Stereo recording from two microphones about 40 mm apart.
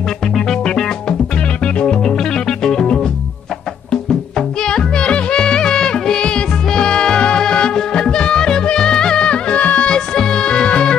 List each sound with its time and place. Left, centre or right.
0.7 s music: centre
4.6 s music: left
9.8 s music: centre